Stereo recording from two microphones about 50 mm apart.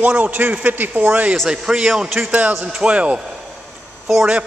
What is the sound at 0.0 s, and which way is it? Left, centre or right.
A man's voice, right.